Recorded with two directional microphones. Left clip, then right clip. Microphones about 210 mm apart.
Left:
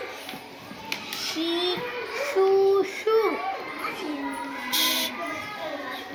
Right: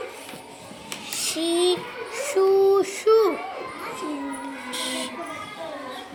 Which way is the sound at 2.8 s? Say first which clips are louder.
Right 4 dB; 60° right (ahead or behind).